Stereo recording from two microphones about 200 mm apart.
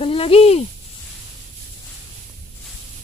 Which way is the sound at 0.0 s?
30° left (ahead or behind).